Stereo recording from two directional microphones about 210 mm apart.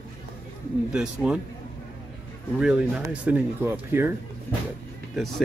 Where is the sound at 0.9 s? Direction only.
5° right (ahead or behind).